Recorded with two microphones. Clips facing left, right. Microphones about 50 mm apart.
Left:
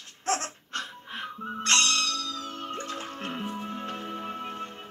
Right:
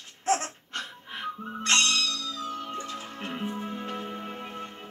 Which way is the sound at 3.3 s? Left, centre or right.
Right.